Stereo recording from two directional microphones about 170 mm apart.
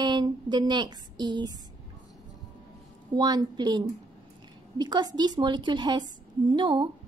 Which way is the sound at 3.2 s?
25° right (ahead or behind).